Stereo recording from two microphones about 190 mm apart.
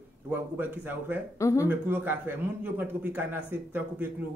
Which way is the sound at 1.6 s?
10° right (ahead or behind).